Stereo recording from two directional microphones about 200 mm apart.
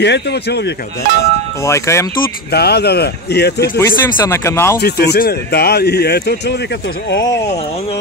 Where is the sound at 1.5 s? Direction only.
15° left (ahead or behind).